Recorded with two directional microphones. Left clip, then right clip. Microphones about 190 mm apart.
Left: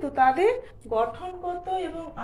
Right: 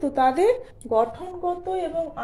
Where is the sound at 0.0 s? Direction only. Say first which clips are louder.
Right 1 dB; 55° right (ahead or behind).